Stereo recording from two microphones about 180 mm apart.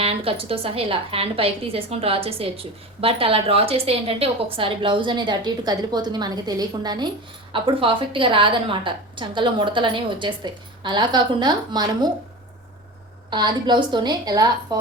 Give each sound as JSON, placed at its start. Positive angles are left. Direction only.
{"t": 0.0, "sound": "a woman's voice", "side_deg": -30}
{"t": 13.3, "sound": "a woman's voice", "side_deg": -25}